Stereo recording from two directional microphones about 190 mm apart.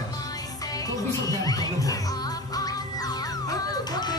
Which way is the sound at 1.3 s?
20° left (ahead or behind).